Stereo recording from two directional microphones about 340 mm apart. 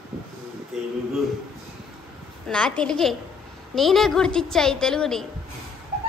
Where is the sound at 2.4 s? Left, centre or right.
Centre.